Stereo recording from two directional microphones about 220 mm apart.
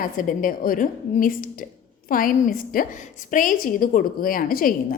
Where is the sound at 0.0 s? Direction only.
40° left (ahead or behind).